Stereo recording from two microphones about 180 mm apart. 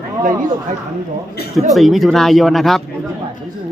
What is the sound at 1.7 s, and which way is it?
Speech, centre (ahead or behind).